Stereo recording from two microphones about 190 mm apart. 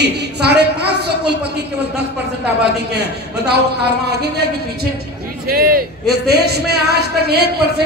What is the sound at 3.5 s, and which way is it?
A man's voice, 60° right (ahead or behind).